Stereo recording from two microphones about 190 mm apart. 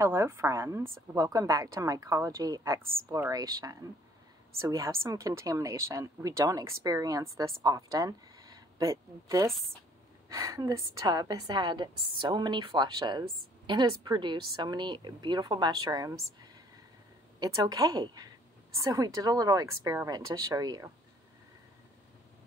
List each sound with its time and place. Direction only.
0.0 s a woman's voice: 15° right (ahead or behind)
17.4 s a woman's voice: 20° right (ahead or behind)